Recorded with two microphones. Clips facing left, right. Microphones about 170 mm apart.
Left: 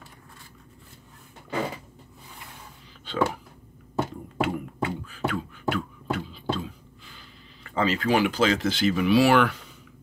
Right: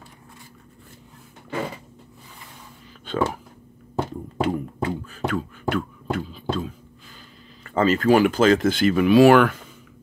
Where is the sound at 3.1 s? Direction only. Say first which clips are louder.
Right 3 dB; 50° right (ahead or behind).